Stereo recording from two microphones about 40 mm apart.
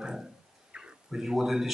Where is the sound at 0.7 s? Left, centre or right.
Right.